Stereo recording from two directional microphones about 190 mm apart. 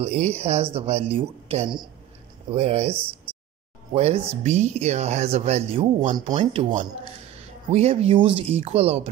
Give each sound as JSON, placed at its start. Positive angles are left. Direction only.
{"t": 0.0, "sound": "speech", "side_deg": -35}
{"t": 3.9, "sound": "speech", "side_deg": -30}